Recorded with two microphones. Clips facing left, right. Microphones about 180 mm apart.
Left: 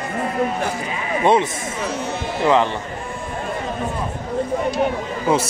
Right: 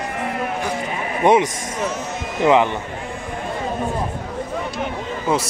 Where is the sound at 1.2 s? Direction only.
15° right (ahead or behind).